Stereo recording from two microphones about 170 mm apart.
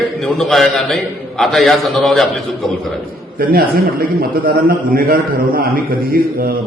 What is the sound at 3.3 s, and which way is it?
A man's voice, 60° right (ahead or behind).